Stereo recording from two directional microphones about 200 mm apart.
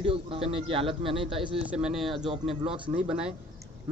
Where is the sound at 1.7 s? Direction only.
5° right (ahead or behind).